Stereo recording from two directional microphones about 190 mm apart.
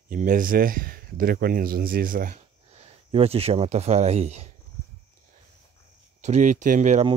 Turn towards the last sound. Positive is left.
turn(degrees=-40)  # may be behind; listen again after turning